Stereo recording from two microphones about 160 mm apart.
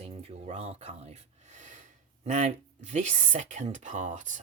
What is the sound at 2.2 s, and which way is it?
Speech, 50° right (ahead or behind).